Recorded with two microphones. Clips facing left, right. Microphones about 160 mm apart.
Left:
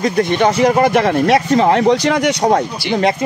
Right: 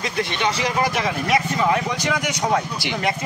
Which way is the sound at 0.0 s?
45° left (ahead or behind).